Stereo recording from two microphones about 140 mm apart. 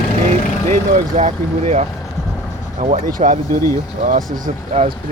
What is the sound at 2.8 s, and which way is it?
Speech, 70° right (ahead or behind).